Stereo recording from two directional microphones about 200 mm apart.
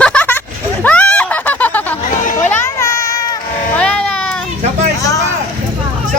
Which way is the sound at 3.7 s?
5° left (ahead or behind).